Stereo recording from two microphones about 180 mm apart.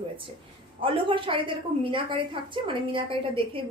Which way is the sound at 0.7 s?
30° right (ahead or behind).